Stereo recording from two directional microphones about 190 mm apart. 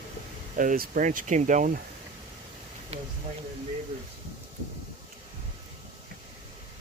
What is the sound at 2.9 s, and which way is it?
Speech, 30° right (ahead or behind).